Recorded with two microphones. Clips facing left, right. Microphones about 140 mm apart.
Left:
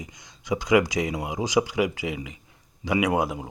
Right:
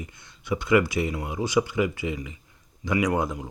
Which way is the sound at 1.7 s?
90° left.